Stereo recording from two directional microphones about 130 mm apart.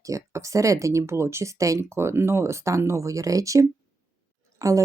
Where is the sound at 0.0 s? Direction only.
25° right (ahead or behind).